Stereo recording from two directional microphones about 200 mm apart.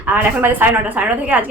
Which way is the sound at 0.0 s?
10° right (ahead or behind).